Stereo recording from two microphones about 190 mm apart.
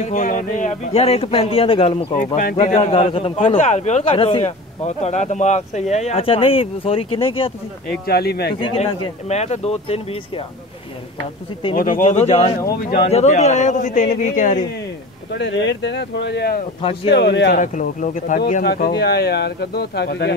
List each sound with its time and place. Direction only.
0.0 s speech: 40° left (ahead or behind)
2.1 s speech: 45° left (ahead or behind)
8.1 s speech: 55° left (ahead or behind)
8.5 s speech: 30° left (ahead or behind)
11.7 s speech: 45° left (ahead or behind)
15.3 s speech: 70° left (ahead or behind)
17.6 s speech: 40° left (ahead or behind); by 20.3 s 60° left (ahead or behind)